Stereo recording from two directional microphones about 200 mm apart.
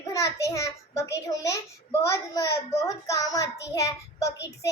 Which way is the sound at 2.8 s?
15° left (ahead or behind).